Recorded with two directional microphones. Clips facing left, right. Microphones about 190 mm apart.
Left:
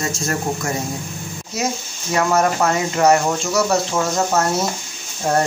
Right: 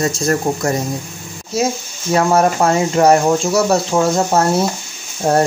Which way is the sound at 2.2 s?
30° right (ahead or behind).